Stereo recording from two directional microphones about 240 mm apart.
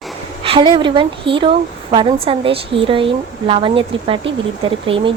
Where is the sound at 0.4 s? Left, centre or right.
Right.